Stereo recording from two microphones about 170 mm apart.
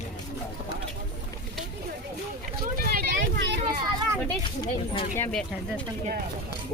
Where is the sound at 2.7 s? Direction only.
60° right (ahead or behind).